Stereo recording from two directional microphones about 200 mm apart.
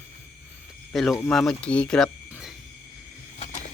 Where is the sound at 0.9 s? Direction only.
Centre (ahead or behind).